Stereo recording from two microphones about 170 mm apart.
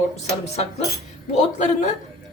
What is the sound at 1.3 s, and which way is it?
Speech, 45° left (ahead or behind).